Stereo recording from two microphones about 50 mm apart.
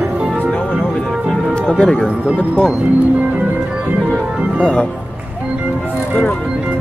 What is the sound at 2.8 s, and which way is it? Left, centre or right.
Music, right.